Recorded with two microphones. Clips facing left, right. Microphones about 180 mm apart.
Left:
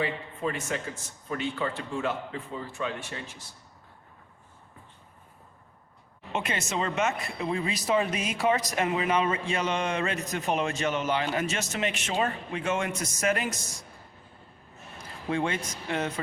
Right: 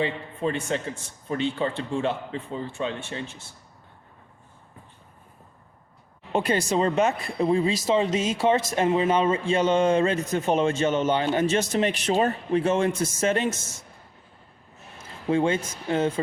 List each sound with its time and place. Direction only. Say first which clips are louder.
0.0 s speech: right 4 dB; 30° right (ahead or behind)
6.3 s speech: right 7 dB; 35° right (ahead or behind)
15.3 s speech: right 6 dB; 30° right (ahead or behind)